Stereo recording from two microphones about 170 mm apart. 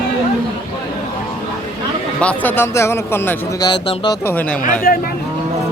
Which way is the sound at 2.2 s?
10° left (ahead or behind).